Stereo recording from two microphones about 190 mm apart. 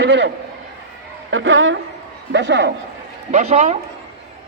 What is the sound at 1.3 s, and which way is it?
Speech, 85° right.